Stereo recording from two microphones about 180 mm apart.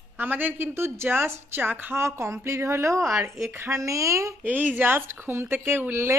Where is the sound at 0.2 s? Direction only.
10° right (ahead or behind).